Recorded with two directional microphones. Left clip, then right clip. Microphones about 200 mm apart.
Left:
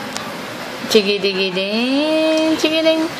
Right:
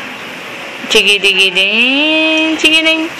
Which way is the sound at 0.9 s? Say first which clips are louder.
Right 7 dB; 10° left (ahead or behind).